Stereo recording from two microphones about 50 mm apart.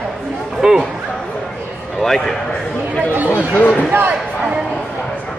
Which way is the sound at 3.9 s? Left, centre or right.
Right.